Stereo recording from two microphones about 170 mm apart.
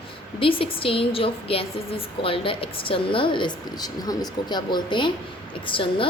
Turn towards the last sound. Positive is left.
turn(degrees=30)  # may be behind; listen again after turning